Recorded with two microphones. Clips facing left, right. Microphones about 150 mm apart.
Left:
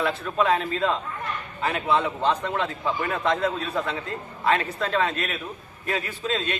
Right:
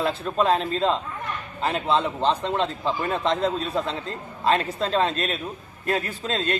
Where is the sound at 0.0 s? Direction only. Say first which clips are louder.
Right 1 dB; 30° right (ahead or behind).